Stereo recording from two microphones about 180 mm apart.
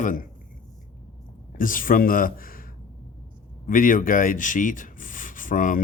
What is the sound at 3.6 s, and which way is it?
Speech, 50° left (ahead or behind).